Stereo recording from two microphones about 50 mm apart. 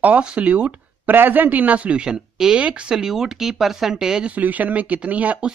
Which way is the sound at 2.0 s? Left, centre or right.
Centre.